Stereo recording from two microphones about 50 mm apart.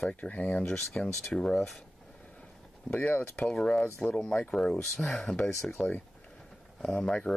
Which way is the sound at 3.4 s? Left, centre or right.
Centre.